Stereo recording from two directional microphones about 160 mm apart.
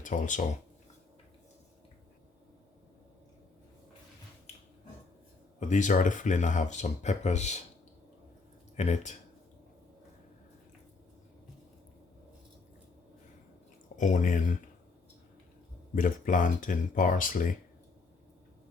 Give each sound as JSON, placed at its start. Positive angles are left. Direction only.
{"t": 0.0, "sound": "speech", "side_deg": 50}
{"t": 5.5, "sound": "speech", "side_deg": 50}
{"t": 8.7, "sound": "speech", "side_deg": 45}
{"t": 13.9, "sound": "speech", "side_deg": 50}
{"t": 16.0, "sound": "speech", "side_deg": 55}